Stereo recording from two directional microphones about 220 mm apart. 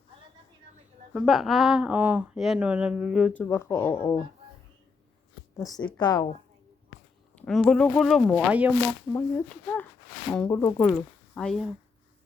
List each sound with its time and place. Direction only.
1.1 s speech: centre (ahead or behind)
5.5 s a woman's voice: 15° left (ahead or behind)
7.3 s speech: 5° left (ahead or behind)
9.1 s a woman's voice: 5° left (ahead or behind)